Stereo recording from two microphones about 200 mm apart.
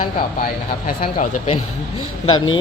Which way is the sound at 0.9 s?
40° left (ahead or behind).